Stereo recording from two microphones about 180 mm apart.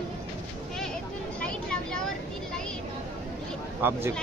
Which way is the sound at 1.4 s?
5° left (ahead or behind).